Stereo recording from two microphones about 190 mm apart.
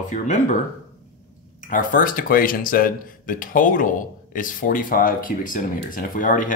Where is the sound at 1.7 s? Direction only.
45° left (ahead or behind).